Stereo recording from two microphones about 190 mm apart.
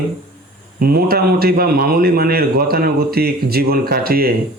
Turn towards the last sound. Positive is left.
turn(degrees=-50)  # may be behind; listen again after turning